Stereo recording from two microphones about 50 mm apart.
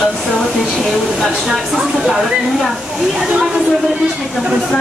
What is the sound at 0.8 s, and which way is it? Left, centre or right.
Speech, centre.